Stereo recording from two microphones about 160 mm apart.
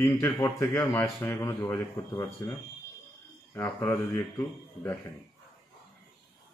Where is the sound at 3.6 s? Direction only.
15° left (ahead or behind).